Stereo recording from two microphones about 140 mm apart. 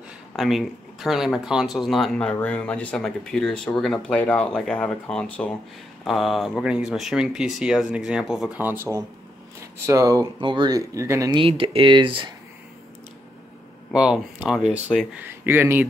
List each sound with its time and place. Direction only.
0.4 s speech: centre (ahead or behind)
8.5 s speech: 15° right (ahead or behind)
11.3 s speech: 40° right (ahead or behind)
13.9 s speech: 5° right (ahead or behind)
15.1 s speech: 15° right (ahead or behind)